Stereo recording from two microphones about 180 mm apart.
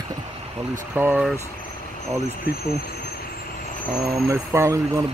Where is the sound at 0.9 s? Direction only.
10° right (ahead or behind).